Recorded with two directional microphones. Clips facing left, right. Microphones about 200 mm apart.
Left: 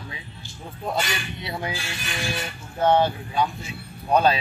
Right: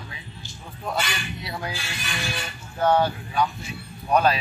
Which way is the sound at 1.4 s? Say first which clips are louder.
Left 3 dB; 25° left (ahead or behind).